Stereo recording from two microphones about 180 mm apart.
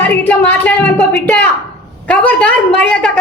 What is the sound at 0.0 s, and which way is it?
A woman's voice, 10° left (ahead or behind).